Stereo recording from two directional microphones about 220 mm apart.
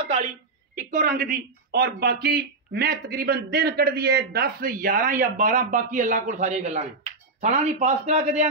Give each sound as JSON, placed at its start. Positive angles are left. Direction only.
{"t": 0.7, "sound": "speech", "side_deg": -40}